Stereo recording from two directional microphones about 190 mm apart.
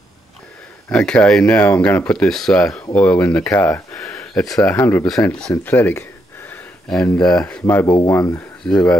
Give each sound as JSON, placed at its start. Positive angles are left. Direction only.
{"t": 0.8, "sound": "speech", "side_deg": 5}
{"t": 2.6, "sound": "speech", "side_deg": 15}
{"t": 7.6, "sound": "speech", "side_deg": 15}
{"t": 8.6, "sound": "speech", "side_deg": 5}